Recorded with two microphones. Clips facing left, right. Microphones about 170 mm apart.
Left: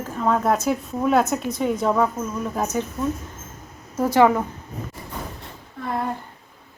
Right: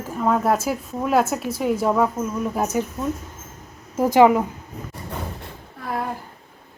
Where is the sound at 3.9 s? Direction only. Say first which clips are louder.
Right 2 dB; 15° right (ahead or behind).